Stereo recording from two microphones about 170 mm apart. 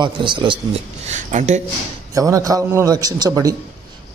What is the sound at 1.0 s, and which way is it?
Speech, 45° right (ahead or behind).